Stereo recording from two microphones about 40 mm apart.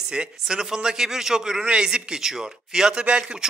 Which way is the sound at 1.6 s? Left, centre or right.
Right.